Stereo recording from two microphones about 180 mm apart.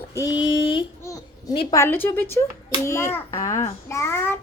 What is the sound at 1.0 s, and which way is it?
Babbling, 20° left (ahead or behind).